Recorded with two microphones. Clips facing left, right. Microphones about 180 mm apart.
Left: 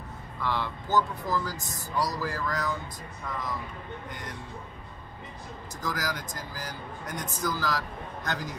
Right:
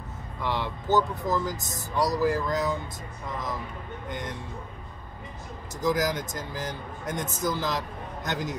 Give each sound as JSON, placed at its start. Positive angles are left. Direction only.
{"t": 0.4, "sound": "speech", "side_deg": -20}
{"t": 4.1, "sound": "speech", "side_deg": -20}
{"t": 5.8, "sound": "speech", "side_deg": -20}